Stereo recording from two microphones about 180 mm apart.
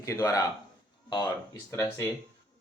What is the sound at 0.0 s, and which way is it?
Speech, 20° left (ahead or behind).